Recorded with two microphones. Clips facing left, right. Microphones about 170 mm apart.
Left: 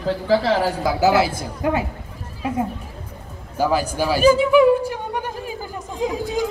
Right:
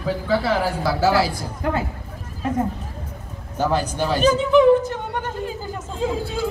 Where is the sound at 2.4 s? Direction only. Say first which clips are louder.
Right 1 dB; 10° left (ahead or behind).